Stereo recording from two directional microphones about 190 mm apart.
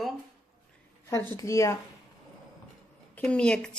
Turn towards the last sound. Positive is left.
turn(degrees=5)  # may be behind; listen again after turning